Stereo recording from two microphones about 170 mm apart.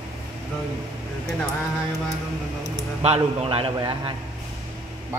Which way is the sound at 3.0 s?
35° right (ahead or behind).